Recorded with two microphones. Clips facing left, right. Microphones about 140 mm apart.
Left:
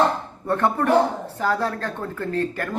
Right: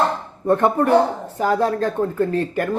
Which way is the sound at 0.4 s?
15° right (ahead or behind).